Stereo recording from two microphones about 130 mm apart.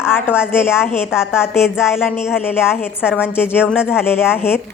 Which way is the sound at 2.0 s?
5° right (ahead or behind).